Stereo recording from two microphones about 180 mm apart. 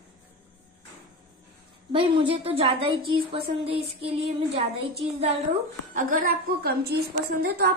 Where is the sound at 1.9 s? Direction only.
30° right (ahead or behind).